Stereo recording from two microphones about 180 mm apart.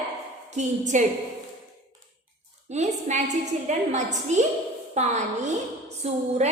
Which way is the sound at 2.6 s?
40° right (ahead or behind).